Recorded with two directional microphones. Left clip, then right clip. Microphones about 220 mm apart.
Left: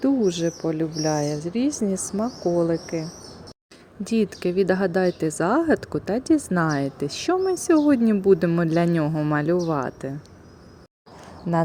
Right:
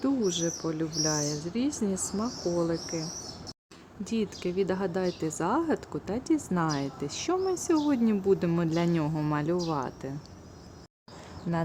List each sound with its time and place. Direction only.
0.0 s speech: 15° left (ahead or behind)
4.0 s speech: 20° left (ahead or behind)